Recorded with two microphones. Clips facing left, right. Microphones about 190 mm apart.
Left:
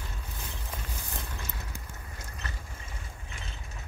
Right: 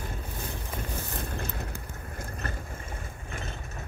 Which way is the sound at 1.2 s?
55° right (ahead or behind).